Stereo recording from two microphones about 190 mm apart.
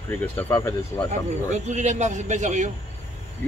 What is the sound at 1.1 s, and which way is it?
A man's voice, 40° right (ahead or behind).